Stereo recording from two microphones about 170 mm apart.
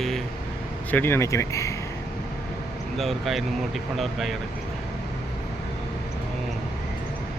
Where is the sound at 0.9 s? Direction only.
15° left (ahead or behind).